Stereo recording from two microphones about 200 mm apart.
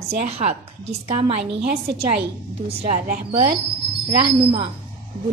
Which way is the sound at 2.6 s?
40° right (ahead or behind).